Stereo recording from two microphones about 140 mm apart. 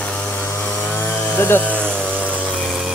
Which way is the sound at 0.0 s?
10° left (ahead or behind).